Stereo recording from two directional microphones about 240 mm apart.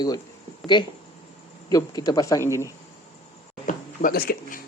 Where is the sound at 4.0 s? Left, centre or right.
Left.